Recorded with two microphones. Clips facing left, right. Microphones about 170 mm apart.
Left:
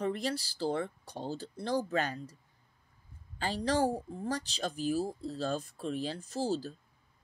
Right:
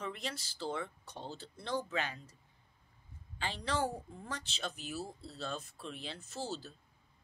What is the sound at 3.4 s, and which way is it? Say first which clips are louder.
Speech: left 6 dB; 40° left (ahead or behind).